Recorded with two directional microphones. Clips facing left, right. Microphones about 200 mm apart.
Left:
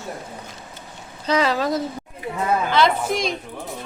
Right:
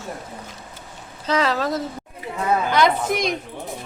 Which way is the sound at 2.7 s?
15° right (ahead or behind).